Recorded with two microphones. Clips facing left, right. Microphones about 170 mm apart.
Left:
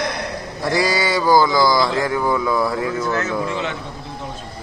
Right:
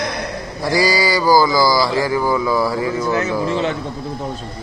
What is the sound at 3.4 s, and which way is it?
Speech, 30° right (ahead or behind).